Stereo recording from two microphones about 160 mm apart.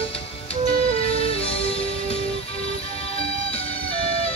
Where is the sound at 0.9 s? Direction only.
35° left (ahead or behind).